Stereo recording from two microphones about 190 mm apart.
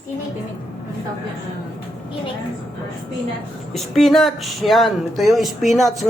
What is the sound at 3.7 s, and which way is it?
Speech, centre (ahead or behind).